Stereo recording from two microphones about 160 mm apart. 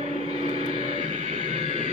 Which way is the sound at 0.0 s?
40° right (ahead or behind).